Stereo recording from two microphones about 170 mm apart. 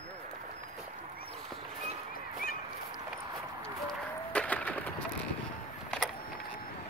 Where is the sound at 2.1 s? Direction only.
60° left (ahead or behind).